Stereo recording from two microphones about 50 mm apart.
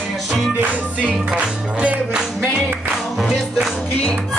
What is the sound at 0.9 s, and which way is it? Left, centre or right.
Music, right.